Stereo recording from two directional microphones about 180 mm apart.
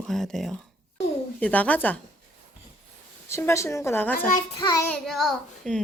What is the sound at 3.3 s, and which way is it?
Speech, 15° left (ahead or behind).